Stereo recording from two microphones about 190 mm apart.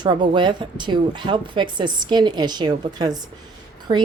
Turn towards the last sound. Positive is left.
turn(degrees=-20)  # may be behind; listen again after turning